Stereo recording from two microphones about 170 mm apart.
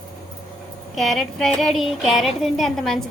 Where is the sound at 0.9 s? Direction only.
Centre (ahead or behind).